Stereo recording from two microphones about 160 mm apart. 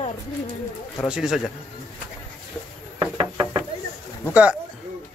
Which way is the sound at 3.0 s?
25° right (ahead or behind).